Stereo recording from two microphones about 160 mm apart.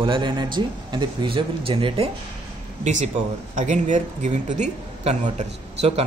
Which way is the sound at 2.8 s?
50° right (ahead or behind).